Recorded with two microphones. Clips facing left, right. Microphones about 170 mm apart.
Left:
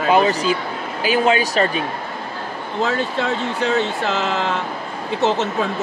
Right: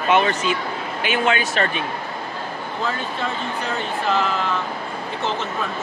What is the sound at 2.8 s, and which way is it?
Speech, 85° left.